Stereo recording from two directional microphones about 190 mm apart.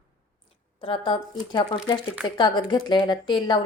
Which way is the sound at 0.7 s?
30° left (ahead or behind).